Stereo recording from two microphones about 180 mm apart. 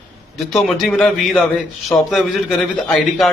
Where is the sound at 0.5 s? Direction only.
Centre (ahead or behind).